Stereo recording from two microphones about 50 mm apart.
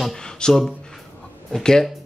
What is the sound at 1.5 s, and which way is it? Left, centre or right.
Speech, centre.